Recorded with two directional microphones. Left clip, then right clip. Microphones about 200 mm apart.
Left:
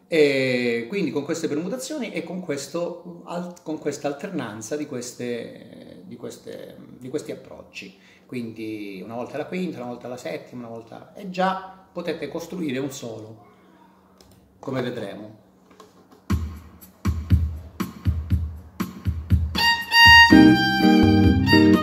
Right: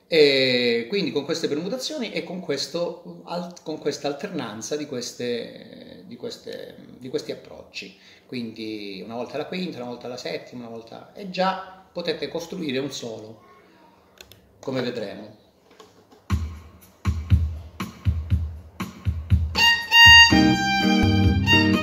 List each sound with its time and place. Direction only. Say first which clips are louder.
0.1 s speech: right 2 dB; centre (ahead or behind)
14.6 s speech: right 1 dB; centre (ahead or behind)
17.0 s music: left 2 dB; 35° left (ahead or behind)
19.9 s violin: even; 5° left (ahead or behind)
20.2 s music: left 4 dB; 35° left (ahead or behind)